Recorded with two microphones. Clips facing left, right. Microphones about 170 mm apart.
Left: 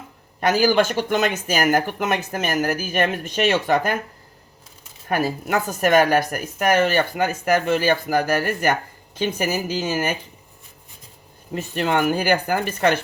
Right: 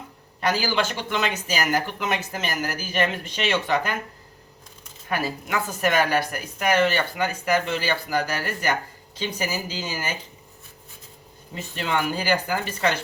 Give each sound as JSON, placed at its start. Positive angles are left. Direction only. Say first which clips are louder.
{"t": 0.3, "sound": "a woman's voice", "louder": "left 6 dB", "side_deg": 45}
{"t": 5.0, "sound": "a woman's voice", "louder": "left 5 dB", "side_deg": 45}
{"t": 11.5, "sound": "a woman's voice", "louder": "left 5 dB", "side_deg": 50}